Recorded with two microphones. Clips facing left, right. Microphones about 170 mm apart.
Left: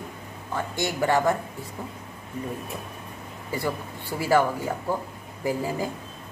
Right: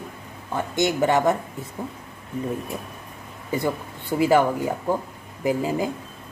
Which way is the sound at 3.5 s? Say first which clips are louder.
Right 4 dB; 20° right (ahead or behind).